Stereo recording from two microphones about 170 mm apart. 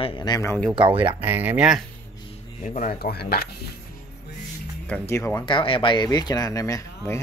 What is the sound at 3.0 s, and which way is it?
Speech, 65° left (ahead or behind).